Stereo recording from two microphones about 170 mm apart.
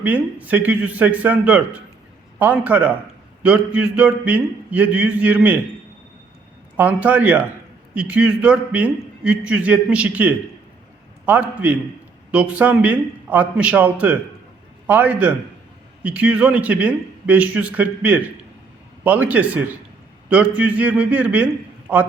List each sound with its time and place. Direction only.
0.0 s a man's voice: 10° right (ahead or behind)
6.7 s a man's voice: 10° right (ahead or behind)